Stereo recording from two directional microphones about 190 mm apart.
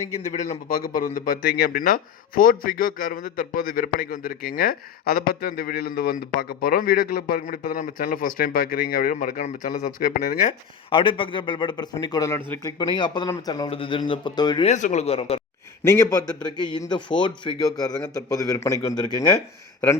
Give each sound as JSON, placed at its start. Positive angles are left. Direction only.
{"t": 0.1, "sound": "a man's voice", "side_deg": 40}
{"t": 10.8, "sound": "a man's voice", "side_deg": 25}
{"t": 14.7, "sound": "a man's voice", "side_deg": 40}
{"t": 15.8, "sound": "a man's voice", "side_deg": 15}